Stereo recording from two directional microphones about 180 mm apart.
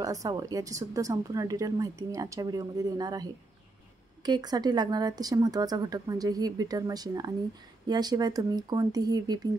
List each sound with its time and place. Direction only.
0.0 s speech: 20° right (ahead or behind)